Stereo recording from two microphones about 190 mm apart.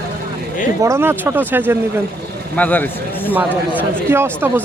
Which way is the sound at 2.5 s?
10° left (ahead or behind).